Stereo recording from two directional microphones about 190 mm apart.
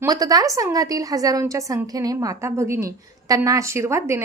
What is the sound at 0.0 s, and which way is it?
A woman's voice, 20° right (ahead or behind).